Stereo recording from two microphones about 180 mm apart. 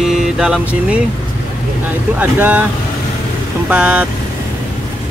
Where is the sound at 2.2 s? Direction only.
10° right (ahead or behind).